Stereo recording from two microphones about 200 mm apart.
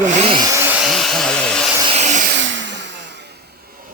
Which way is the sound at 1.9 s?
35° right (ahead or behind).